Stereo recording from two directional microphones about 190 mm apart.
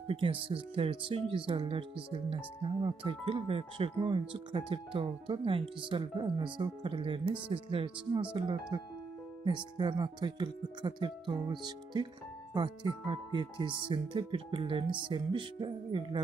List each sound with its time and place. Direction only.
0.1 s speech: 30° right (ahead or behind)